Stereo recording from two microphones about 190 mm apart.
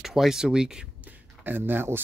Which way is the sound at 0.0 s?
Centre (ahead or behind).